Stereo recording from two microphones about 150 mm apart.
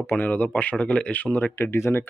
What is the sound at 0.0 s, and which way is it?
A man's voice, 10° left (ahead or behind).